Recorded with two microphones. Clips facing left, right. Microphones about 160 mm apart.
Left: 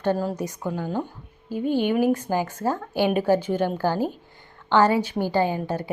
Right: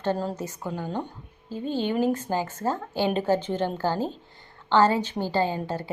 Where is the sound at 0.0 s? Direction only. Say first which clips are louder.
Left 3 dB; 10° left (ahead or behind).